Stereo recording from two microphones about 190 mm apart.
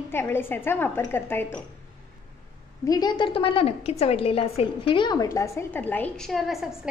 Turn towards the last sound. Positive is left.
turn(degrees=-5)  # may be behind; listen again after turning